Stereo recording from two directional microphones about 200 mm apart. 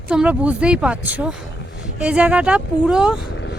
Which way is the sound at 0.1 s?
5° right (ahead or behind).